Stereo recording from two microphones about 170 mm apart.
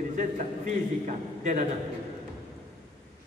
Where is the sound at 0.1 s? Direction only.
50° right (ahead or behind).